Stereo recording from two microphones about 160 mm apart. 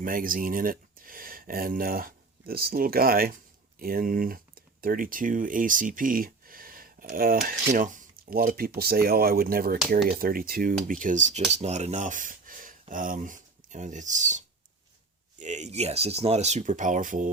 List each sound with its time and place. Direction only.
0.0 s speech: 60° right (ahead or behind)
11.0 s speech: 50° right (ahead or behind)